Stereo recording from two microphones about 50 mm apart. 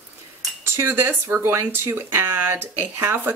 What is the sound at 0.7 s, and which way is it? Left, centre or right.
Speech, right.